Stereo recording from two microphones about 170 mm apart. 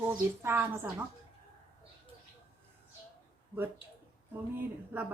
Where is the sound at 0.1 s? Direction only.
15° right (ahead or behind).